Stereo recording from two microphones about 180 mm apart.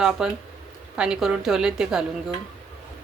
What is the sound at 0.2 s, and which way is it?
A woman's voice, 5° right (ahead or behind).